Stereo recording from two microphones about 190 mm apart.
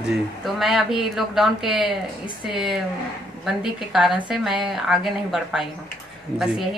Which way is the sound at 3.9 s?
Centre (ahead or behind).